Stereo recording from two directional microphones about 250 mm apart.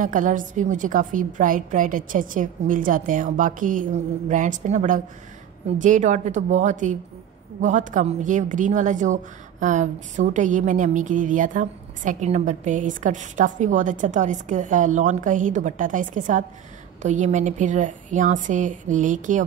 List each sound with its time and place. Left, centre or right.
0.0 s a woman's voice: right